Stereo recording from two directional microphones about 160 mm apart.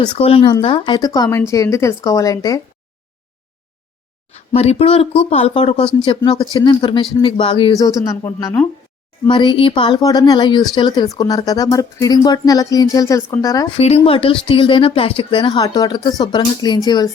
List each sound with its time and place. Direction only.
0.2 s speech: 35° left (ahead or behind)
4.3 s speech: 40° left (ahead or behind); by 13.7 s 20° left (ahead or behind)
13.7 s speech: 40° left (ahead or behind)